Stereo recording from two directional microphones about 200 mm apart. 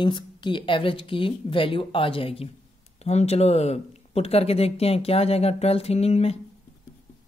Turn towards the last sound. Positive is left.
turn(degrees=30)  # may be behind; listen again after turning